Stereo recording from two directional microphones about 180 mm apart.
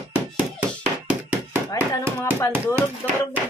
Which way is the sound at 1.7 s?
20° left (ahead or behind).